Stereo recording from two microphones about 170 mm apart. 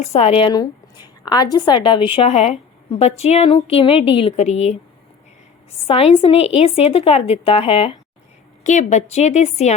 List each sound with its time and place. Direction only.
0.0 s a woman's voice: 40° left (ahead or behind)
5.9 s a woman's voice: 35° left (ahead or behind)
8.6 s a woman's voice: 45° left (ahead or behind)